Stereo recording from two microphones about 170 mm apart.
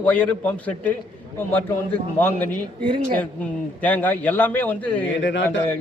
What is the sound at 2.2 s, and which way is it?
A man's voice, 10° left (ahead or behind).